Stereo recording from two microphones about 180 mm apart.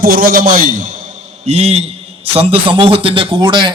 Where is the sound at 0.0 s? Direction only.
50° right (ahead or behind).